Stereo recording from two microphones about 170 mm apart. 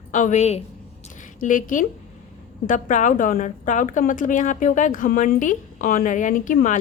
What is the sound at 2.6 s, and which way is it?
A woman's voice, 50° left (ahead or behind).